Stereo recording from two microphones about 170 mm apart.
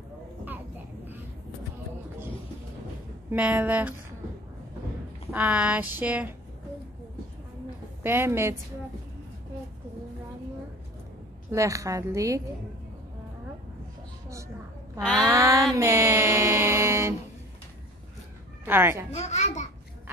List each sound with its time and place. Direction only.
0.5 s a sound: 10° right (ahead or behind)
3.3 s speech: 10° right (ahead or behind)
5.3 s speech: 10° right (ahead or behind)
8.0 s speech: 15° right (ahead or behind)
11.5 s a woman's voice: 20° right (ahead or behind)
15.2 s speech: 15° right (ahead or behind)
15.7 s mantra: 15° right (ahead or behind)
18.7 s speech: 15° right (ahead or behind)
19.1 s a child's voice: 40° left (ahead or behind)